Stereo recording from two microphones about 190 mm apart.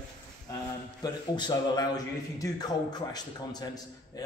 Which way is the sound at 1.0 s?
20° left (ahead or behind).